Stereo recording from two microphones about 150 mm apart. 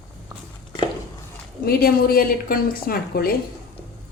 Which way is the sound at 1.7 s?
90° left.